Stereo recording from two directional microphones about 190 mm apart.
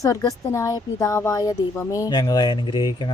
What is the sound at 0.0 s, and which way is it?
Speech, 15° left (ahead or behind).